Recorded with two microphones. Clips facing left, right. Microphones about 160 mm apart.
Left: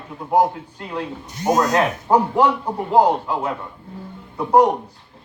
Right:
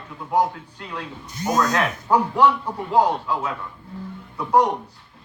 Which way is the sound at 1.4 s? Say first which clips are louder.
Left 4 dB; 25° left (ahead or behind).